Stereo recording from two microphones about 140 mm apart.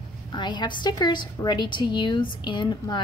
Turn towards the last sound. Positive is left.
turn(degrees=30)  # may be behind; listen again after turning